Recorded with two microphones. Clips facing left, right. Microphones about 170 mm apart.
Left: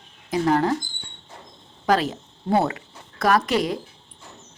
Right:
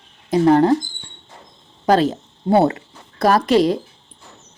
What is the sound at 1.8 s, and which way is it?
A woman's voice, 30° right (ahead or behind).